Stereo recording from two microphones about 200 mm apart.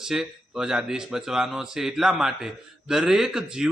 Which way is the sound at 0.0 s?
5° right (ahead or behind).